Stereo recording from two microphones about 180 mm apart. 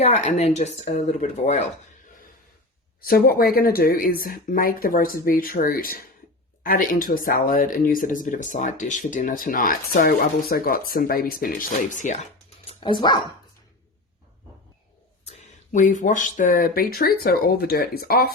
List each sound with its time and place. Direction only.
0.0 s speech: 40° left (ahead or behind)
3.0 s speech: 55° left (ahead or behind)
12.6 s dog: 25° left (ahead or behind)
15.2 s speech: 40° left (ahead or behind); by 18.3 s 60° left (ahead or behind)